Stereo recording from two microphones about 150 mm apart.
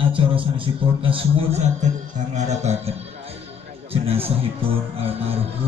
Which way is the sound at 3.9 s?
40° right (ahead or behind).